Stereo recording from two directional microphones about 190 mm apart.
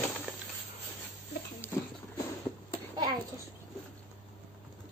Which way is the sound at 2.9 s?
20° right (ahead or behind).